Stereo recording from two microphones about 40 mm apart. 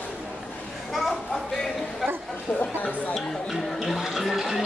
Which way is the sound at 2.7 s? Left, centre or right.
Left.